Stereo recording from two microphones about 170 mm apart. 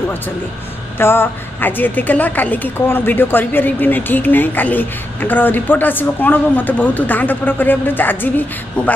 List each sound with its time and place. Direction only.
0.9 s a woman's voice: 15° left (ahead or behind)